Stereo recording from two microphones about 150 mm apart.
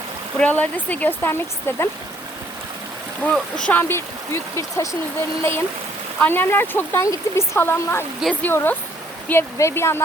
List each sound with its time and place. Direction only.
0.3 s speech: 10° left (ahead or behind)
3.2 s speech: 10° left (ahead or behind)